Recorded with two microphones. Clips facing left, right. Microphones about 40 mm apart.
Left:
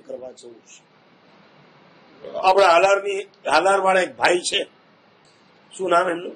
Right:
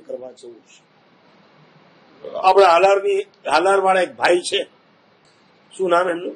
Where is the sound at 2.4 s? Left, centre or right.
Centre.